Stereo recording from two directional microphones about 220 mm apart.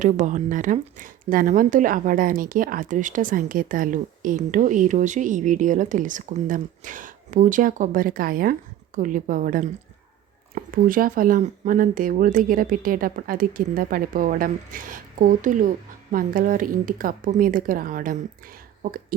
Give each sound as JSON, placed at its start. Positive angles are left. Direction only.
{"t": 0.0, "sound": "speech", "side_deg": -35}